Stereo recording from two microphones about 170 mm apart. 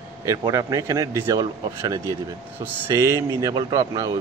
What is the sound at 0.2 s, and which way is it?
A man's voice, 20° right (ahead or behind).